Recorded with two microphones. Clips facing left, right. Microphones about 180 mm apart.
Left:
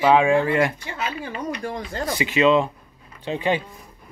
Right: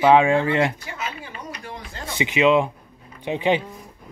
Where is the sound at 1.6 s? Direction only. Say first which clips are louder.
Left 8 dB; 50° left (ahead or behind).